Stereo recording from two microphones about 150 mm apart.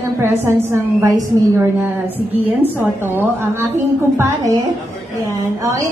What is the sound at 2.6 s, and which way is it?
A woman's voice, 15° right (ahead or behind).